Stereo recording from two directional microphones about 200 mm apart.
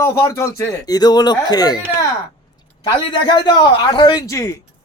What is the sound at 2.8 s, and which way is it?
A man's voice, 25° left (ahead or behind).